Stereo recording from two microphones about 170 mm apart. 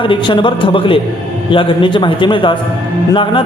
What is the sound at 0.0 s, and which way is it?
A man's voice, 30° left (ahead or behind).